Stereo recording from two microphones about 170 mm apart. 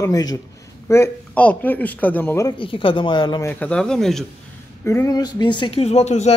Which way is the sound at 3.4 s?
10° left (ahead or behind).